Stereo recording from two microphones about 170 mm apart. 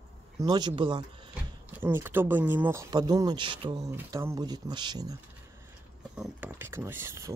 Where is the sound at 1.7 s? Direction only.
15° right (ahead or behind); by 3.8 s 30° right (ahead or behind).